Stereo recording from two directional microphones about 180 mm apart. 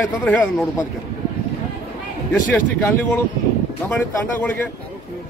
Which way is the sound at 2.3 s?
10° left (ahead or behind).